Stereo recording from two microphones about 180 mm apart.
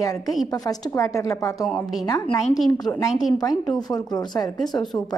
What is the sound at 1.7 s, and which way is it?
Speech, centre (ahead or behind).